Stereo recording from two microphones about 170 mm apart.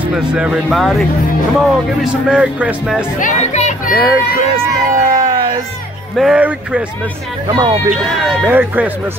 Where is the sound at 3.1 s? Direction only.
45° left (ahead or behind).